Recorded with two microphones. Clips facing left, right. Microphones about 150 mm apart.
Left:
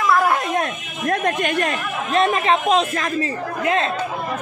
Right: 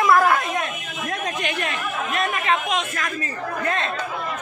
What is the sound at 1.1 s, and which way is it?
Speech, 55° left (ahead or behind).